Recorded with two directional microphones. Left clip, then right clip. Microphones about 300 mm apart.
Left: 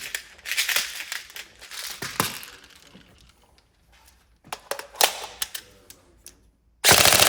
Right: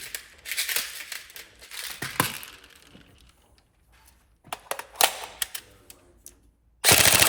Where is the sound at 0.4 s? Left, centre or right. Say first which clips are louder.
Left 5 dB; centre.